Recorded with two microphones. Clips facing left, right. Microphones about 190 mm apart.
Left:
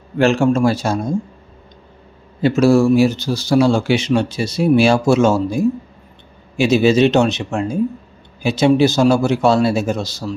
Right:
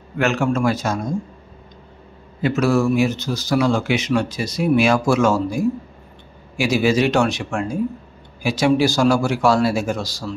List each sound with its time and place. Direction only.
0.2 s speech: 30° left (ahead or behind)
2.4 s speech: 30° left (ahead or behind)